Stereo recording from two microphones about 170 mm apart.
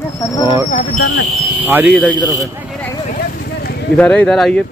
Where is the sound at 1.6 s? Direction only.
10° right (ahead or behind).